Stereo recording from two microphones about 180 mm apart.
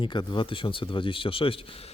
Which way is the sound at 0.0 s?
25° left (ahead or behind).